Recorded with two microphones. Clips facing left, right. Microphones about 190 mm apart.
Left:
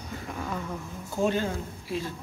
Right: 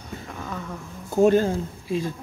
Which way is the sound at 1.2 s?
45° right (ahead or behind).